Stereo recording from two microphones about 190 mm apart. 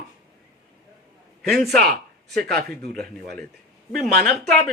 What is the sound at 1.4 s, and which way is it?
Speech, centre (ahead or behind).